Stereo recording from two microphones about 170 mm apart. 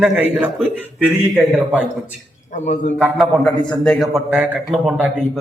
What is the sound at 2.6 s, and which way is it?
Speech, 45° left (ahead or behind).